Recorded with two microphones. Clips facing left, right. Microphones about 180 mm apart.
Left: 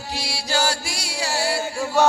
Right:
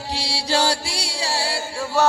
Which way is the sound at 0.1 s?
30° right (ahead or behind).